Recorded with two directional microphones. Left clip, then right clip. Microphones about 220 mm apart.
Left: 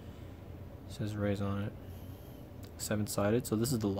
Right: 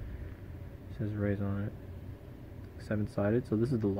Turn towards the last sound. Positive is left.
turn(degrees=5)  # may be behind; listen again after turning